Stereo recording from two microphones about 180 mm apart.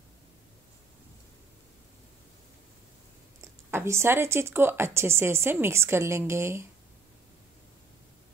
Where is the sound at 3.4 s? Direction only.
15° right (ahead or behind).